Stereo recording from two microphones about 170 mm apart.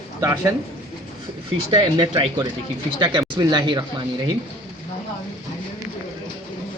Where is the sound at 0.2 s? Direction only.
15° right (ahead or behind).